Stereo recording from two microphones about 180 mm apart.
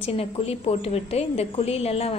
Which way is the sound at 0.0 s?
35° left (ahead or behind).